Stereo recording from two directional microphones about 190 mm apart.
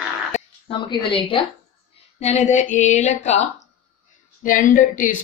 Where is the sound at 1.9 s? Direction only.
35° left (ahead or behind).